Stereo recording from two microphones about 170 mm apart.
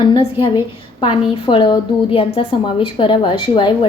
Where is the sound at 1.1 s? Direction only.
30° left (ahead or behind).